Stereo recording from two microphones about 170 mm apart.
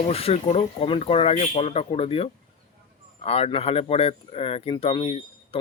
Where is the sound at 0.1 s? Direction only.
35° left (ahead or behind).